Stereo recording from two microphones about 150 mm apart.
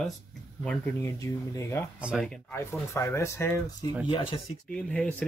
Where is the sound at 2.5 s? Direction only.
20° left (ahead or behind).